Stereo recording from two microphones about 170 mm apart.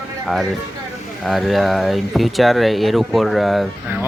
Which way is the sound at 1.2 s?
Centre (ahead or behind).